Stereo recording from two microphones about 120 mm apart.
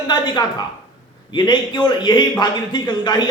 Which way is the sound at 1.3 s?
40° left (ahead or behind).